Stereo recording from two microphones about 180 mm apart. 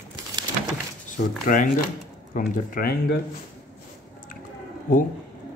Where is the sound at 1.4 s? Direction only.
45° left (ahead or behind).